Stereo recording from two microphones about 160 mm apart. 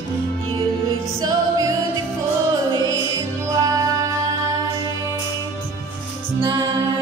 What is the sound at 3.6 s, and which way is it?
Music, 20° right (ahead or behind).